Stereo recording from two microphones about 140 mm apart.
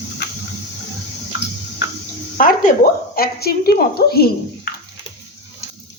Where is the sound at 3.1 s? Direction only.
90° left.